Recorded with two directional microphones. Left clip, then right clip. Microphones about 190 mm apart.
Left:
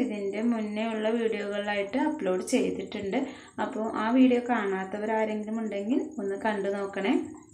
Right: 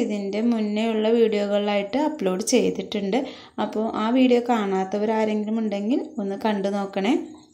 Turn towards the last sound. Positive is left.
turn(degrees=-45)  # may be behind; listen again after turning